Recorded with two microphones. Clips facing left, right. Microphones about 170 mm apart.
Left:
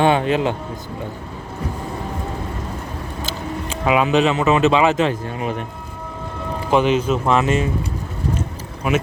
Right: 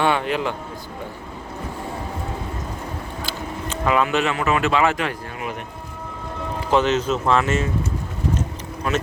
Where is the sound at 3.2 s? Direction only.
20° left (ahead or behind).